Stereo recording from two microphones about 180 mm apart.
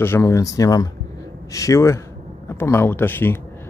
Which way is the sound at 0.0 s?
15° left (ahead or behind).